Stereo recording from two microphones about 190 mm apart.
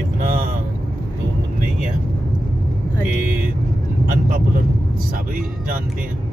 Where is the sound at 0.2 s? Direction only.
50° right (ahead or behind).